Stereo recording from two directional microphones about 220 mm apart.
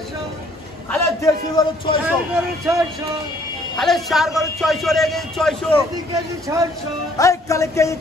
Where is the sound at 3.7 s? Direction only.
Centre (ahead or behind).